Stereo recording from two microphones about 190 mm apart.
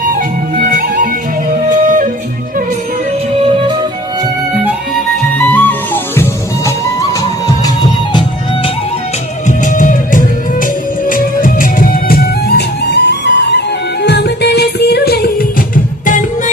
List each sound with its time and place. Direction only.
0.6 s music: 45° right (ahead or behind)
3.3 s music: 30° right (ahead or behind)
5.4 s music: 10° left (ahead or behind)
9.7 s music: 45° left (ahead or behind)